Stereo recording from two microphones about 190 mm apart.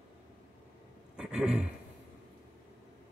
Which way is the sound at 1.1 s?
5° right (ahead or behind).